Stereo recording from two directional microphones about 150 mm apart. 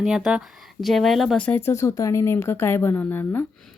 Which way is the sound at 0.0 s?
5° right (ahead or behind).